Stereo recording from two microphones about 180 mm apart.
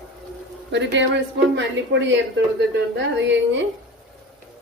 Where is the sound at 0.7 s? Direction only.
80° right.